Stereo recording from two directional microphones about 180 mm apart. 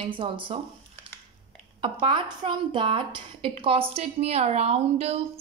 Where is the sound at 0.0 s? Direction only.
30° right (ahead or behind).